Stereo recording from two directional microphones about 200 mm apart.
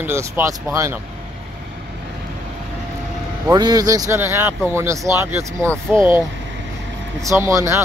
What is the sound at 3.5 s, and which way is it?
Speech, 20° right (ahead or behind).